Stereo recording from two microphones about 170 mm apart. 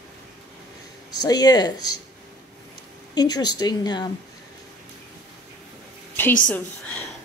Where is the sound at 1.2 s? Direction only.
25° left (ahead or behind).